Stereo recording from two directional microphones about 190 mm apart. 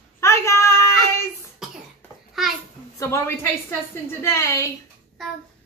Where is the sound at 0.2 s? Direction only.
15° left (ahead or behind).